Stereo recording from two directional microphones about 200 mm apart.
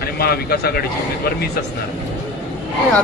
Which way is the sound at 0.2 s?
50° left (ahead or behind).